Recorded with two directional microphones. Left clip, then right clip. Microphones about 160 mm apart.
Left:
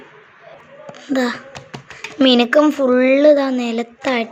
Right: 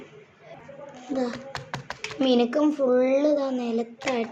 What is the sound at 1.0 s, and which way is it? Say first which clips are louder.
A child's voice: left 9 dB; 35° left (ahead or behind).